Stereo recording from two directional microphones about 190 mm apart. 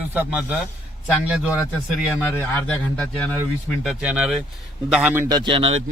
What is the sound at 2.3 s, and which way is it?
A man's voice, 10° left (ahead or behind).